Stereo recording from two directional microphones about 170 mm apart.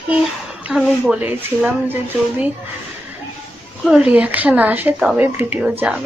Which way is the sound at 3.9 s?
5° right (ahead or behind).